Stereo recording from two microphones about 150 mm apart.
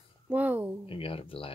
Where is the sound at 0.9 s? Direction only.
35° left (ahead or behind).